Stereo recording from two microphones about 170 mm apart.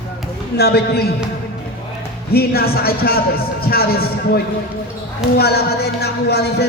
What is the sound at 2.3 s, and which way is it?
A man's voice, 65° left (ahead or behind).